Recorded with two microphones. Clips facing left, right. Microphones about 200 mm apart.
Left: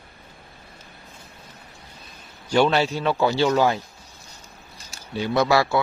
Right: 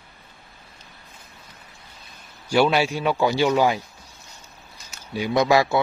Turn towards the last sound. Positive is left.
turn(degrees=-15)  # may be behind; listen again after turning